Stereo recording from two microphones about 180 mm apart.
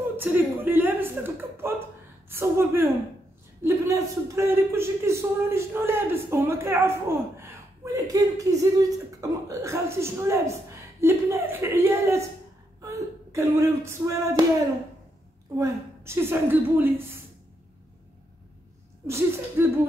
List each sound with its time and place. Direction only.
0.2 s a man's voice: 10° right (ahead or behind)
15.5 s a man's voice: 15° right (ahead or behind)
19.0 s a man's voice: 15° right (ahead or behind)